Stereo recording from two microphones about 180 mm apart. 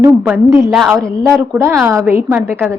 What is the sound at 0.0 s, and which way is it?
Speech, 15° right (ahead or behind).